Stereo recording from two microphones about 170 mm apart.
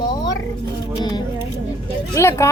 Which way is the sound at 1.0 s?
25° left (ahead or behind).